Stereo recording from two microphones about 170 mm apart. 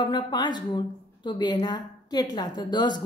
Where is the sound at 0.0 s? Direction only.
25° left (ahead or behind).